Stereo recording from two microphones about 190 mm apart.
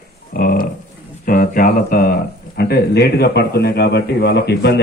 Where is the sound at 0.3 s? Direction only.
50° left (ahead or behind).